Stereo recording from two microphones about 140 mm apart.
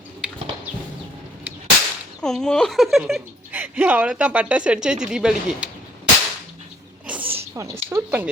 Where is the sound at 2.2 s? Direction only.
5° left (ahead or behind).